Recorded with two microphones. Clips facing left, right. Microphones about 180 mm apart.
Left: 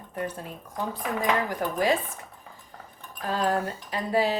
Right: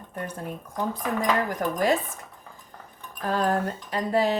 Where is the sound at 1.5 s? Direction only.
45° right (ahead or behind).